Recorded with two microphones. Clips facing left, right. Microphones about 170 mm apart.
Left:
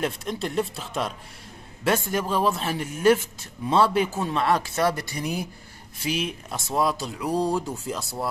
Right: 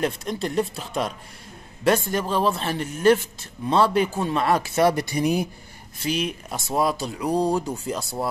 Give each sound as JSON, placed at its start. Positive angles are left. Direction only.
{"t": 0.0, "sound": "speech", "side_deg": 0}
{"t": 4.7, "sound": "speech", "side_deg": -15}
{"t": 6.0, "sound": "speech", "side_deg": 5}